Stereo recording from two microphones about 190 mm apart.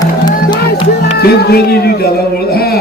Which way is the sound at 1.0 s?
55° left (ahead or behind).